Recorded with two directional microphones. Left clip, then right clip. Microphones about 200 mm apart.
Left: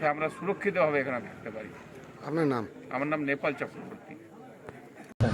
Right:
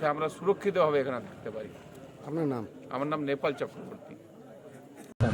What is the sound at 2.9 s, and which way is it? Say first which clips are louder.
Speech: left 1 dB; 20° right (ahead or behind).